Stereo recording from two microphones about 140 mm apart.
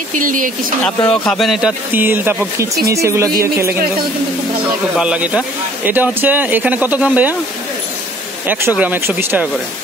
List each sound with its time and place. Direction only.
0.2 s speech: 70° right (ahead or behind)
0.8 s a man's voice: 5° left (ahead or behind)
2.0 s speech: 15° right (ahead or behind)
4.9 s speech: 5° right (ahead or behind)
8.5 s speech: 15° right (ahead or behind)